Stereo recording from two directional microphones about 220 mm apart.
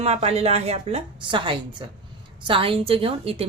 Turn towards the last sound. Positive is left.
turn(degrees=-25)  # may be behind; listen again after turning